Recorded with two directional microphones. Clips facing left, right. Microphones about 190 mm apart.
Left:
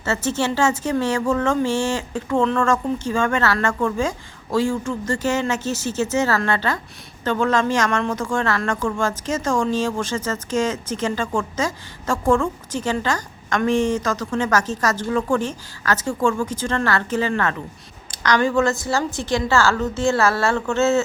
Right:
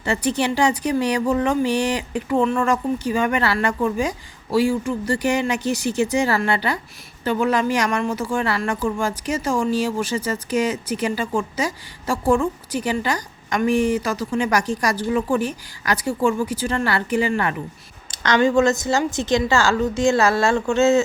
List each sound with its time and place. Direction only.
0.0 s speech: 15° right (ahead or behind)
18.1 s speech: 25° right (ahead or behind)